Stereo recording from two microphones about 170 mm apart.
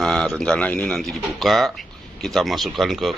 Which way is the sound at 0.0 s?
5° left (ahead or behind).